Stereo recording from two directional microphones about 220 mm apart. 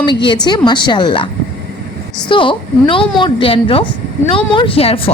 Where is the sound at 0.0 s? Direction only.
20° left (ahead or behind).